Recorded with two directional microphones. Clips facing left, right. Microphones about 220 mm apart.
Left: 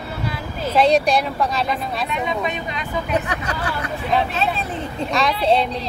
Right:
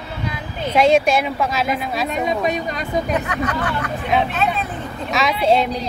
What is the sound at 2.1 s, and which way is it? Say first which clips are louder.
Speech: right 4 dB; 40° right (ahead or behind).